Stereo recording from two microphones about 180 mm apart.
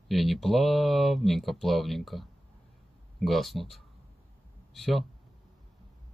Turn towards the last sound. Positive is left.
turn(degrees=0)  # may be behind; listen again after turning